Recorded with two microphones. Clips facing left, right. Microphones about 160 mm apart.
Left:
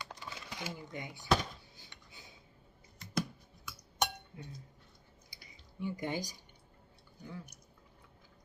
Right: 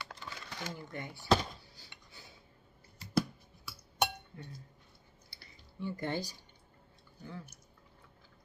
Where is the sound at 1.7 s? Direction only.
20° left (ahead or behind).